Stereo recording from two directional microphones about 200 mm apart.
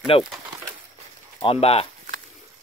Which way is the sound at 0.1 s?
30° left (ahead or behind).